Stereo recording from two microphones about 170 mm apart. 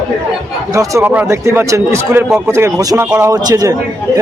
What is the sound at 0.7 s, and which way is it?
Speech, 20° right (ahead or behind).